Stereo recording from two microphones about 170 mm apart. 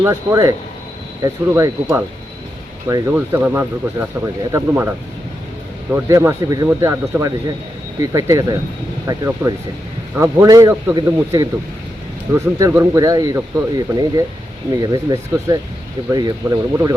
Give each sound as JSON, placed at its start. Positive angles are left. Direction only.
{"t": 0.0, "sound": "speech", "side_deg": -20}
{"t": 3.1, "sound": "speech", "side_deg": -10}